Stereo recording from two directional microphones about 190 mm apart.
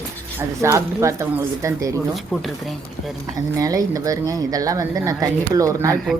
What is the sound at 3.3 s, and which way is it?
Speech, 20° right (ahead or behind).